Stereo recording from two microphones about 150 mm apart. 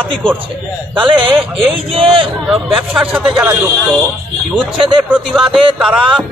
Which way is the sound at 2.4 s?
5° right (ahead or behind).